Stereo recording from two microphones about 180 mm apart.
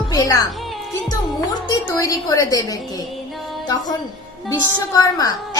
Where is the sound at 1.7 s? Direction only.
20° left (ahead or behind).